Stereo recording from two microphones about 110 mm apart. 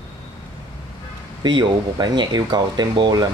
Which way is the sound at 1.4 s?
40° right (ahead or behind).